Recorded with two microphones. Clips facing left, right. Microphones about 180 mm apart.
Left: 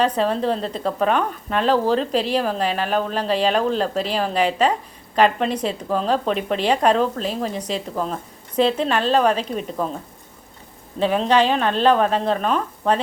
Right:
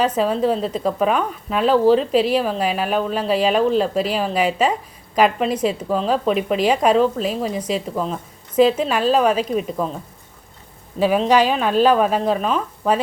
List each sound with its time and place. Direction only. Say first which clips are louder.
0.2 s a woman's voice: right 2 dB; 5° right (ahead or behind)
11.0 s a woman's voice: right 2 dB; 5° right (ahead or behind)